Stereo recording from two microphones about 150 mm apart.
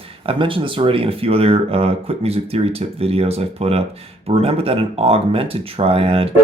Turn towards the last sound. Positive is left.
turn(degrees=-40)  # may be behind; listen again after turning